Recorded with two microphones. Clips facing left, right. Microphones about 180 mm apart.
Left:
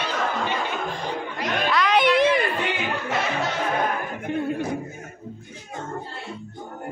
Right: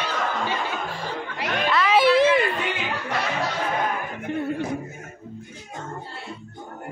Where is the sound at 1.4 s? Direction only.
5° right (ahead or behind).